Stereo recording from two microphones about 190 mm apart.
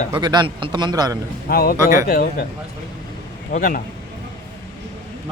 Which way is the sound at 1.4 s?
50° left (ahead or behind).